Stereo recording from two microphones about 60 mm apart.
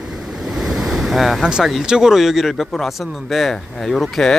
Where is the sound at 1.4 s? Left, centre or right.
Centre.